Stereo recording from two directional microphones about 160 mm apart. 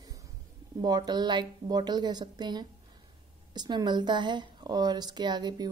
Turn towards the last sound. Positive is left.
turn(degrees=-25)  # may be behind; listen again after turning